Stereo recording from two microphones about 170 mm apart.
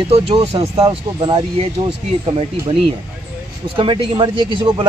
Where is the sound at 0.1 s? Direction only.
35° right (ahead or behind).